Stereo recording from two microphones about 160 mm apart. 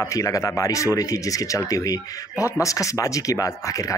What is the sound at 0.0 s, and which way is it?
Speech, 20° left (ahead or behind).